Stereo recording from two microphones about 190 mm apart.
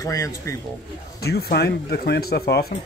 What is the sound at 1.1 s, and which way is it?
Speech, 55° left (ahead or behind).